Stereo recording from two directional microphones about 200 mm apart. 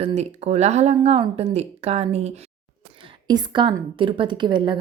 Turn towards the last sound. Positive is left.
turn(degrees=-25)  # may be behind; listen again after turning